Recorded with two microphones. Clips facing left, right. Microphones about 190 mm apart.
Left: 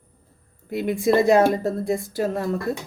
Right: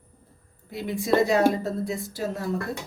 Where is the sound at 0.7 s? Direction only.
55° left (ahead or behind).